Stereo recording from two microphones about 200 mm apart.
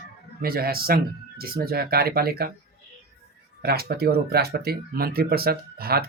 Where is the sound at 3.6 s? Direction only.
50° right (ahead or behind).